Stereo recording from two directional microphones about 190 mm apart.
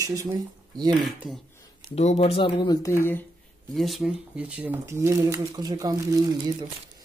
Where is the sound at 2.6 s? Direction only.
20° left (ahead or behind).